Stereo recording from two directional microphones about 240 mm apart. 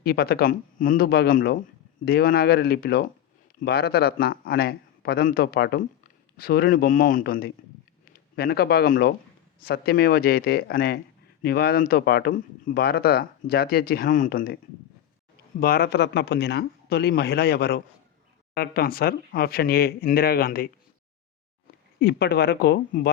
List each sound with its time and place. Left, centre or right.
0.0 s speech: left
15.6 s speech: left
22.0 s speech: left